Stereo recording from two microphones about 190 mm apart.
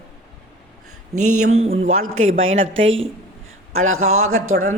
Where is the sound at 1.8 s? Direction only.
90° right.